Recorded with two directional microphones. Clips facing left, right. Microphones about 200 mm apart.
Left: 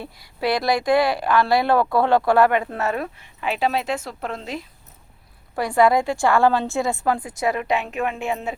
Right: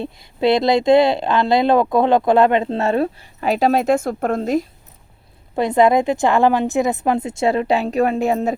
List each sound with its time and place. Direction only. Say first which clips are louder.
0.0 s speech: right 7 dB; 25° right (ahead or behind); by 4.6 s 45° right (ahead or behind)
5.5 s speech: right 3 dB; 20° right (ahead or behind); by 8.5 s 40° right (ahead or behind)